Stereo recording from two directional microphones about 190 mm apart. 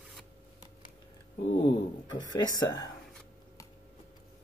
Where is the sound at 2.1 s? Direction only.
20° left (ahead or behind).